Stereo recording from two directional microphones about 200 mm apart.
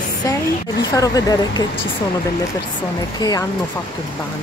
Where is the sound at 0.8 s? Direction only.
20° left (ahead or behind).